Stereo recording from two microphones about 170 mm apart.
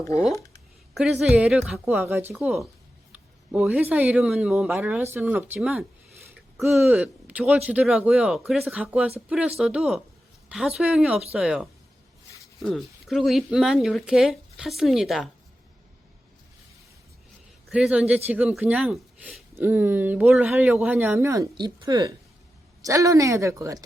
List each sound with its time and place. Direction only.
0.9 s speech: centre (ahead or behind)
17.7 s speech: 5° right (ahead or behind)
19.5 s speech: 15° right (ahead or behind)